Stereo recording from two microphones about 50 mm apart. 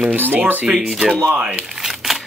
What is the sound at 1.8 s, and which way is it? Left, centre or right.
Crumpling, centre.